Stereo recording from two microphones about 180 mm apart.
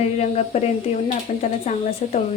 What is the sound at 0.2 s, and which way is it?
Speech, 35° left (ahead or behind).